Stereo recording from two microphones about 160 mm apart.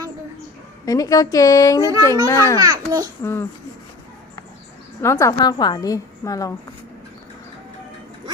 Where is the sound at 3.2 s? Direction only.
15° left (ahead or behind).